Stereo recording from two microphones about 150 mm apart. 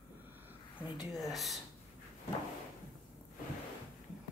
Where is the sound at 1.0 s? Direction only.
Centre (ahead or behind).